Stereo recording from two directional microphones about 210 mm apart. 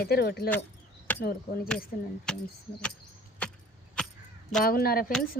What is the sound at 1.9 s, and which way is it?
Chop, 45° left (ahead or behind).